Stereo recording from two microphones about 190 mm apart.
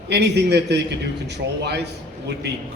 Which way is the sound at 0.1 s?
65° right (ahead or behind).